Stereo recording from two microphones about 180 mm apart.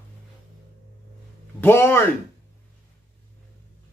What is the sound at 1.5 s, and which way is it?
Speech, 15° left (ahead or behind).